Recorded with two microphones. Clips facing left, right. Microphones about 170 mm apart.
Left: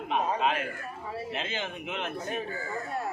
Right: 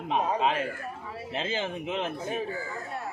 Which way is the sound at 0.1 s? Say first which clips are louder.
Right 2 dB; 35° right (ahead or behind).